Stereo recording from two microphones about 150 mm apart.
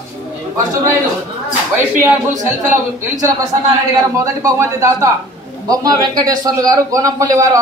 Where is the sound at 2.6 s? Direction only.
55° right (ahead or behind).